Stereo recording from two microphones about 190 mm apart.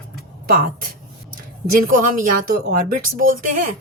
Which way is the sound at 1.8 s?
45° right (ahead or behind).